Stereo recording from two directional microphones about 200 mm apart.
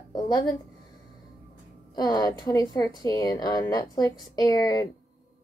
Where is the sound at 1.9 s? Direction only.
20° left (ahead or behind).